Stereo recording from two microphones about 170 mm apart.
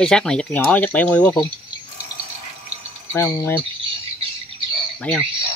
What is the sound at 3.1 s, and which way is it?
Speech, 15° left (ahead or behind).